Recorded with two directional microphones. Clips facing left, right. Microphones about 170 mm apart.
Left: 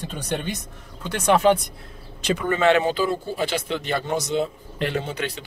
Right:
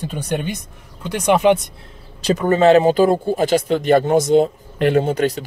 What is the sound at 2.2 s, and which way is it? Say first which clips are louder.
Speech: right 6 dB; 40° right (ahead or behind).